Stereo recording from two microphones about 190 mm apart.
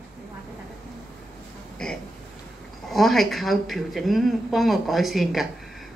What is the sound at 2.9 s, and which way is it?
Speech, centre (ahead or behind).